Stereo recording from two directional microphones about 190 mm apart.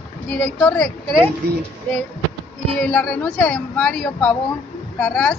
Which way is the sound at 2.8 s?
5° left (ahead or behind).